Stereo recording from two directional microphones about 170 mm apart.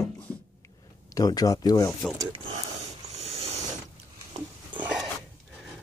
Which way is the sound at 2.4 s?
40° right (ahead or behind).